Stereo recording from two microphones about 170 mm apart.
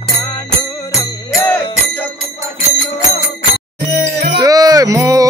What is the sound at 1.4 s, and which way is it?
Music, 10° left (ahead or behind).